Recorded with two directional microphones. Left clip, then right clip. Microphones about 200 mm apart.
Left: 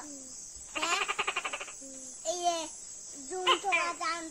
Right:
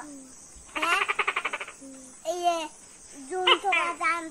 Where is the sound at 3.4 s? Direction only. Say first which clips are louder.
Right 5 dB; 40° left (ahead or behind).